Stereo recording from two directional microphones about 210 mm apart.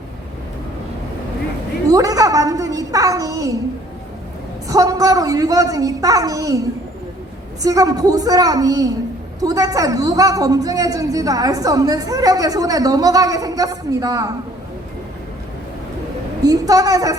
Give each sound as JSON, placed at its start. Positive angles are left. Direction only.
{"t": 1.9, "sound": "a sound", "side_deg": -15}
{"t": 4.7, "sound": "a woman's voice", "side_deg": -15}
{"t": 16.4, "sound": "a woman's voice", "side_deg": -15}